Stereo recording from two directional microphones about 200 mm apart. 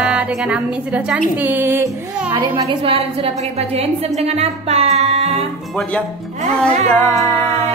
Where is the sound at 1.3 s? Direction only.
10° right (ahead or behind).